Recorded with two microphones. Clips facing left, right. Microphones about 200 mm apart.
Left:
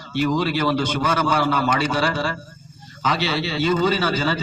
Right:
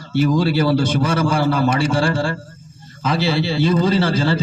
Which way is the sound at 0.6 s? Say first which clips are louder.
Right 4 dB; 30° right (ahead or behind).